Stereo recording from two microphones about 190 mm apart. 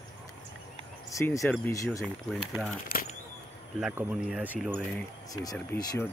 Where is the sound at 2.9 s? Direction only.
45° left (ahead or behind).